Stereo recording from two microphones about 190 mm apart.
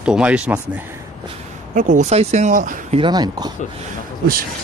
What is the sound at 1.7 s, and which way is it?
Speech, 40° right (ahead or behind).